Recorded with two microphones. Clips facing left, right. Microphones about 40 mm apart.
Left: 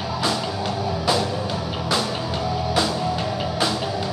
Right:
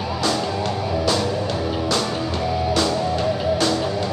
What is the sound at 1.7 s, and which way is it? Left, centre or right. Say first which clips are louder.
Music: right 2 dB; centre.